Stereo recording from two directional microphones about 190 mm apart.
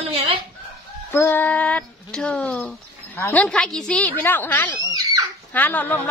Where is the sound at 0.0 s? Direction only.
30° right (ahead or behind).